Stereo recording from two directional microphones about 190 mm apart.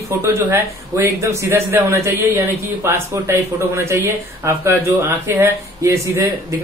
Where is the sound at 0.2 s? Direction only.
15° right (ahead or behind).